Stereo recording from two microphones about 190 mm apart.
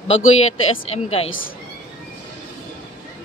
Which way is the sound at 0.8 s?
35° left (ahead or behind).